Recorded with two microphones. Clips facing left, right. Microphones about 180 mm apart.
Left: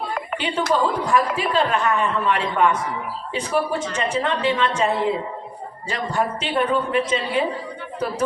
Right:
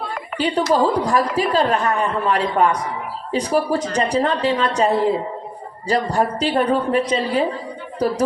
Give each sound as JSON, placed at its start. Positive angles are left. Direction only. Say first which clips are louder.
{"t": 0.3, "sound": "a woman's voice", "louder": "right 4 dB", "side_deg": -40}